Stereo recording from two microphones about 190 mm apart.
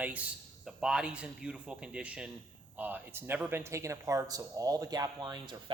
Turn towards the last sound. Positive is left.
turn(degrees=-25)  # may be behind; listen again after turning